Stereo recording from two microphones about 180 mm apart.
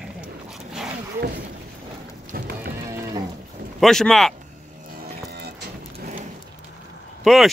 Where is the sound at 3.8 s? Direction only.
Centre (ahead or behind).